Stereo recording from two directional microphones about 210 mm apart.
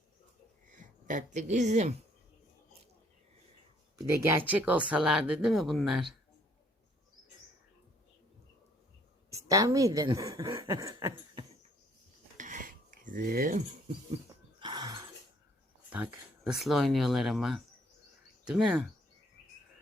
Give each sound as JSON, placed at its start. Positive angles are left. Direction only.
{"t": 0.7, "sound": "speech", "side_deg": -40}
{"t": 4.3, "sound": "speech", "side_deg": -10}
{"t": 9.3, "sound": "speech", "side_deg": -15}
{"t": 12.4, "sound": "cutlery", "side_deg": -40}
{"t": 14.6, "sound": "a sound", "side_deg": -20}
{"t": 15.9, "sound": "speech", "side_deg": -5}